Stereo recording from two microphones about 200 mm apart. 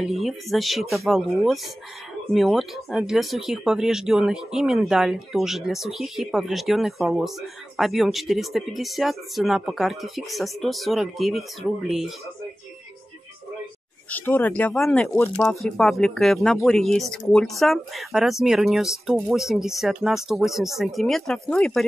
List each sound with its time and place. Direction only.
0.0 s speech: centre (ahead or behind)
14.1 s speech: 10° left (ahead or behind)